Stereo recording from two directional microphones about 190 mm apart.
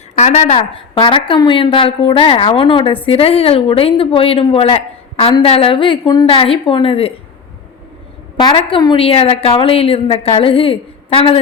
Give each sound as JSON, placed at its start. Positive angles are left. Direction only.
{"t": 0.2, "sound": "a woman's voice", "side_deg": 40}
{"t": 8.4, "sound": "a woman's voice", "side_deg": 25}